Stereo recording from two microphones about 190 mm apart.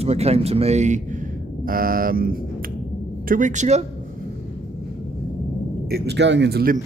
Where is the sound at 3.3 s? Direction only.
40° right (ahead or behind).